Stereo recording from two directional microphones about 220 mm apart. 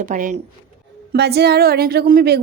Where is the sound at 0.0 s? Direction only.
35° right (ahead or behind).